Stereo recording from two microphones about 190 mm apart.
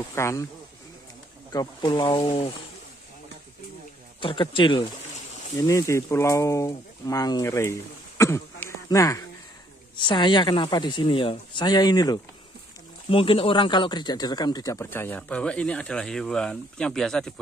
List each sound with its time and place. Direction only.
0.1 s speech: 15° left (ahead or behind)
1.5 s a woman's voice: 20° left (ahead or behind)
4.2 s a woman's voice: 25° left (ahead or behind)
8.2 s a sound: 15° left (ahead or behind)
9.9 s a woman's voice: 25° left (ahead or behind); by 17.3 s 5° left (ahead or behind)